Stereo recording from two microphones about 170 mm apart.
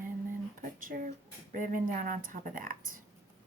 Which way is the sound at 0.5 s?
50° right (ahead or behind).